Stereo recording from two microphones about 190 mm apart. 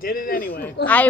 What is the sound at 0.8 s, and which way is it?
Speech, 60° left (ahead or behind).